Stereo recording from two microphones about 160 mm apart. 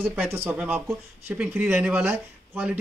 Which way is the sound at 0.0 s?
15° right (ahead or behind).